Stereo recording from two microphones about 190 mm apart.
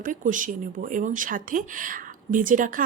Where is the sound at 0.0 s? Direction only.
45° right (ahead or behind).